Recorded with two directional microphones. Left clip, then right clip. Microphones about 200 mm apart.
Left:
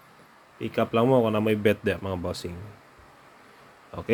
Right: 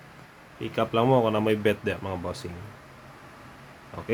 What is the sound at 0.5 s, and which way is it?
Speech, 20° left (ahead or behind).